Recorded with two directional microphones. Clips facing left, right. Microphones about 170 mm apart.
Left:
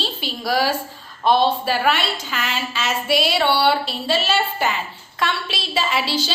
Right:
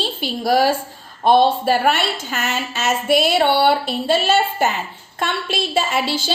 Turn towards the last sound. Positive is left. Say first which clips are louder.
# right 1 dB
turn(degrees=-50)  # may be behind; listen again after turning